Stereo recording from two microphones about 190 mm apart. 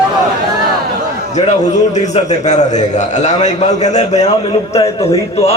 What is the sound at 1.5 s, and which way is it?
A man's voice, 40° left (ahead or behind).